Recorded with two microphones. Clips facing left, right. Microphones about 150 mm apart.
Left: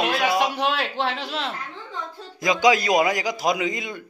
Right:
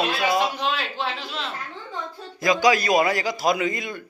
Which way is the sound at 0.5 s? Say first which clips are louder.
Left 3 dB; 65° left (ahead or behind).